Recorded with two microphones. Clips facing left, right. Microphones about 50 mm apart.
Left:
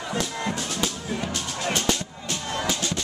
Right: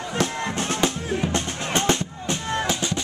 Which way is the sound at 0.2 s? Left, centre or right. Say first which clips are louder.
Right 7 dB; right.